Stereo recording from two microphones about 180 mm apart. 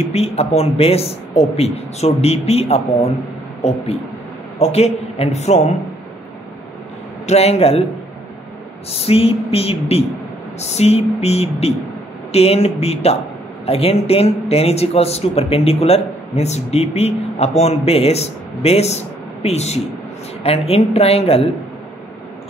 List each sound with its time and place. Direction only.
0.1 s speech: 35° left (ahead or behind)
4.6 s speech: 35° left (ahead or behind)
7.2 s speech: 35° left (ahead or behind)
8.9 s speech: 35° left (ahead or behind)